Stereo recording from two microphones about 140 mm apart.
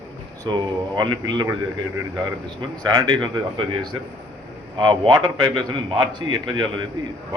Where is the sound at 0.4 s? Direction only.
30° right (ahead or behind).